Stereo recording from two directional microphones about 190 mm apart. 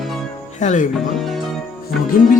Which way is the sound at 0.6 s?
40° left (ahead or behind).